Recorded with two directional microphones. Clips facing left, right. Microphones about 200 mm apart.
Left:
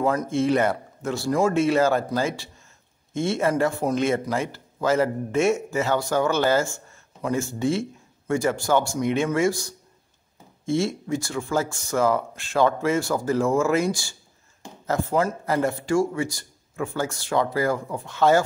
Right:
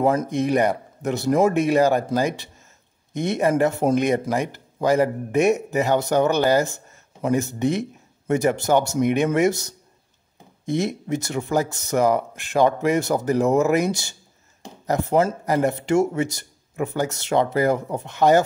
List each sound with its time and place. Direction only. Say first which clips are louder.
0.3 s speech: right 1 dB; 15° right (ahead or behind)